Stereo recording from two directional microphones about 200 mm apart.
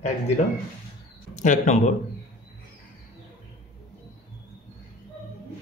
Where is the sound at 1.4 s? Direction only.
35° left (ahead or behind).